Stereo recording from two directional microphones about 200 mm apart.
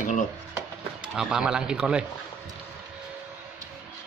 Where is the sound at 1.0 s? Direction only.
5° right (ahead or behind).